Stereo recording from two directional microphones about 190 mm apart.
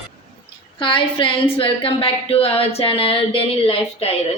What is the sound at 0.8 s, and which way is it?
Speech, 25° left (ahead or behind).